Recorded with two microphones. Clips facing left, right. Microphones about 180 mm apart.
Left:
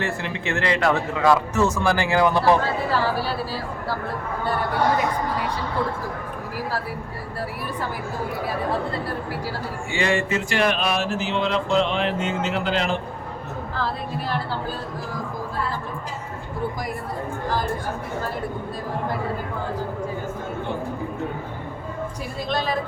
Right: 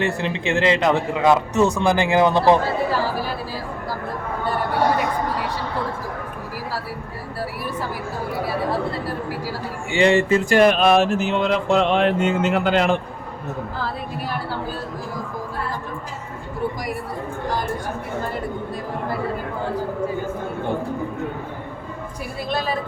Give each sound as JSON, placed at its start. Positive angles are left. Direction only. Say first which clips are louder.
{"t": 0.0, "sound": "speech", "louder": "right 4 dB", "side_deg": -20}
{"t": 9.9, "sound": "speech", "louder": "right 7 dB", "side_deg": -25}
{"t": 10.5, "sound": "mantra", "louder": "right 8 dB", "side_deg": -45}
{"t": 22.4, "sound": "a woman's voice", "louder": "right 1 dB", "side_deg": -5}